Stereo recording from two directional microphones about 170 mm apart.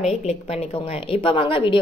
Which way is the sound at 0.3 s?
35° left (ahead or behind).